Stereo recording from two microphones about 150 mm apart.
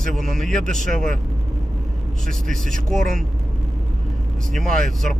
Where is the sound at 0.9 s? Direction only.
55° right (ahead or behind).